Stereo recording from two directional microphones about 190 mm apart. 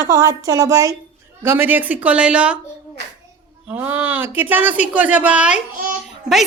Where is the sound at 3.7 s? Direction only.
10° right (ahead or behind).